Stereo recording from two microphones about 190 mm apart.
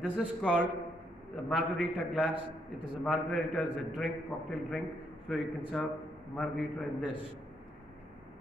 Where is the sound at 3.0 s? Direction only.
Centre (ahead or behind).